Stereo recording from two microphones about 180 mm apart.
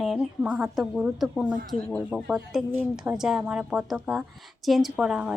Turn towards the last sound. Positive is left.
turn(degrees=-5)  # may be behind; listen again after turning